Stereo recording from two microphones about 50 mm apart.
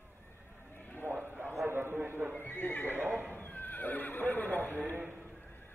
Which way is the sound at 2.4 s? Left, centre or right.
Left.